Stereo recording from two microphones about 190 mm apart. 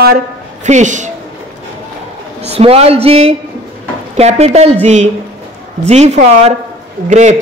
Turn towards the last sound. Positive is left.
turn(degrees=-40)  # may be behind; listen again after turning